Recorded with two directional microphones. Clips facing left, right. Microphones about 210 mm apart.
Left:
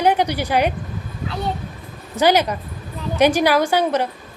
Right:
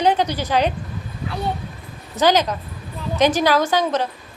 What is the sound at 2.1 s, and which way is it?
A woman's voice, 10° left (ahead or behind).